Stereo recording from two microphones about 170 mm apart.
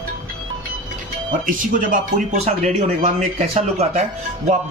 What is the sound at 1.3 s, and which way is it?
Speech, 50° right (ahead or behind).